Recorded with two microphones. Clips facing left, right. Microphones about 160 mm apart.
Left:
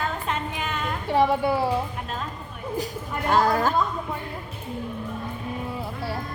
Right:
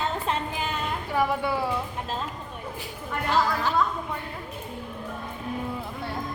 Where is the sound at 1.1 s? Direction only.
30° left (ahead or behind).